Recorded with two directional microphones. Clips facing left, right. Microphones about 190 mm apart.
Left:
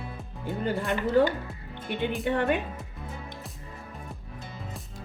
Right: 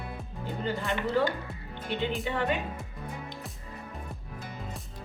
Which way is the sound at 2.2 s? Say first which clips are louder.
Left 6 dB; 55° left (ahead or behind).